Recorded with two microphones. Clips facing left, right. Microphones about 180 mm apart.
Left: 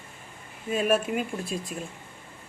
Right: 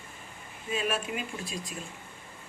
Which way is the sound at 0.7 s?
50° left (ahead or behind).